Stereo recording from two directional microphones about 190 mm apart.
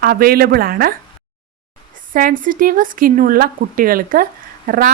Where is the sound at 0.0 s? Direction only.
50° right (ahead or behind).